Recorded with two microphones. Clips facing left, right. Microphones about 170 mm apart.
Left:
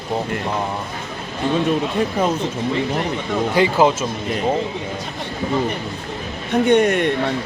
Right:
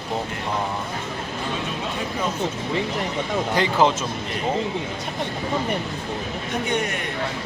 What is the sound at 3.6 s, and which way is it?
Speech, 10° left (ahead or behind).